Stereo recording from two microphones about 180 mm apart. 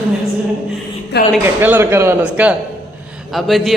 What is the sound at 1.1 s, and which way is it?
Speech, 70° left (ahead or behind).